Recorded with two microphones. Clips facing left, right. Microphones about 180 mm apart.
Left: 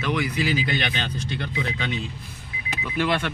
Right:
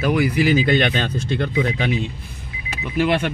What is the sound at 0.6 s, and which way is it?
Speech, 50° right (ahead or behind).